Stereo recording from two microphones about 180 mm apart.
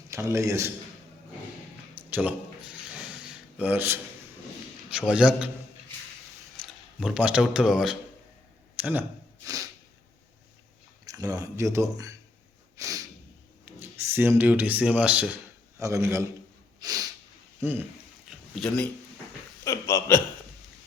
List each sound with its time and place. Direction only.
0.1 s a man's voice: 15° right (ahead or behind)
2.0 s mechanisms: 10° right (ahead or behind)
4.9 s a man's voice: 5° right (ahead or behind)
6.6 s speech: centre (ahead or behind)
8.8 s a sound: 10° right (ahead or behind)
11.0 s speech: 20° right (ahead or behind)
12.7 s snort: 20° right (ahead or behind)
13.7 s a man's voice: 10° right (ahead or behind)
16.8 s sneeze: 20° right (ahead or behind)
17.6 s speech: 10° right (ahead or behind)
18.3 s a sound: 5° left (ahead or behind)
19.6 s a sound: 15° left (ahead or behind)